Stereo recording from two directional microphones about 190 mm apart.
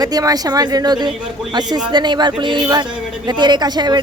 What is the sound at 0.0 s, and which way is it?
Speech, 20° right (ahead or behind).